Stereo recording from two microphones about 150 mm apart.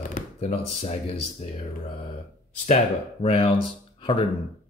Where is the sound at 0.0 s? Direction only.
60° left (ahead or behind).